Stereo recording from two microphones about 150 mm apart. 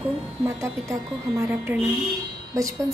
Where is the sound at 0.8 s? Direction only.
20° right (ahead or behind).